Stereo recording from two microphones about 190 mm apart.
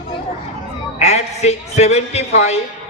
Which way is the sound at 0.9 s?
35° left (ahead or behind).